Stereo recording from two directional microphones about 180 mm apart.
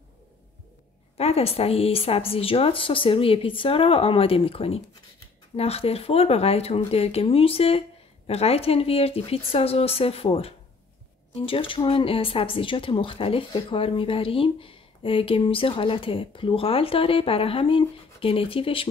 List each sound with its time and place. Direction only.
1.1 s speech: 35° left (ahead or behind)